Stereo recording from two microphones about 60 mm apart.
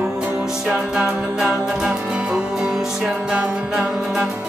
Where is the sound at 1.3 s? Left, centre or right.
Centre.